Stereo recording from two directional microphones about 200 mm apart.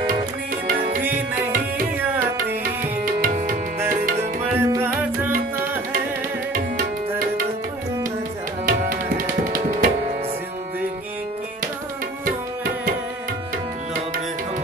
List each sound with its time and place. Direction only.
4.6 s music: 10° right (ahead or behind)
8.6 s tabla: 45° right (ahead or behind)